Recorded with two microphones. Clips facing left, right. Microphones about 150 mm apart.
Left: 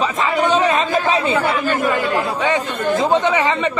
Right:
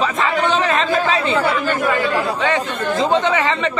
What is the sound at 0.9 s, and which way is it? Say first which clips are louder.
Speech: even; 20° left (ahead or behind).